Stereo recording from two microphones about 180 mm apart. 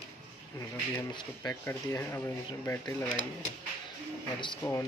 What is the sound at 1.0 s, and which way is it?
Speech, 20° left (ahead or behind).